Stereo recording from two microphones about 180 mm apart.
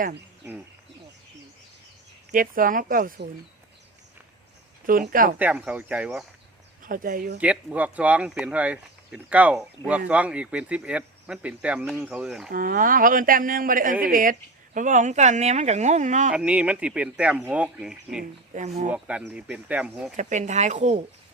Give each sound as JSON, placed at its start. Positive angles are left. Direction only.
{"t": 2.3, "sound": "speech", "side_deg": -50}
{"t": 4.9, "sound": "speech", "side_deg": -50}
{"t": 5.4, "sound": "speech", "side_deg": -5}
{"t": 6.8, "sound": "speech", "side_deg": -50}
{"t": 7.3, "sound": "speech", "side_deg": -5}
{"t": 12.5, "sound": "speech", "side_deg": -50}
{"t": 16.3, "sound": "speech", "side_deg": -5}
{"t": 18.2, "sound": "speech", "side_deg": -40}
{"t": 18.9, "sound": "speech", "side_deg": -5}
{"t": 20.1, "sound": "speech", "side_deg": -40}